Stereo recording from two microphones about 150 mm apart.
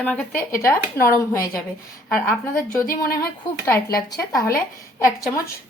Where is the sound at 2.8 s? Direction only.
80° left.